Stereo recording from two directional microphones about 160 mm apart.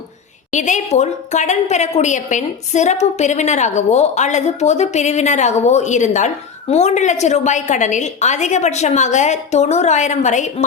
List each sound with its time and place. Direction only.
0.5 s a woman's voice: 50° left (ahead or behind)